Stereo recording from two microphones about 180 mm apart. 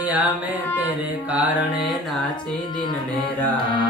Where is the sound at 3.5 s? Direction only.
25° left (ahead or behind).